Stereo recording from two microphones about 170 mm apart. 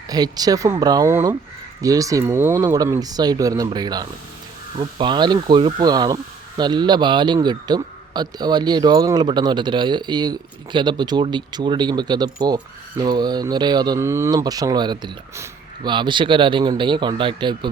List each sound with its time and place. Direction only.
0.1 s speech: 20° right (ahead or behind)